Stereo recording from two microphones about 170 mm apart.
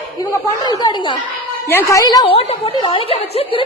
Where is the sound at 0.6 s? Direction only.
25° left (ahead or behind).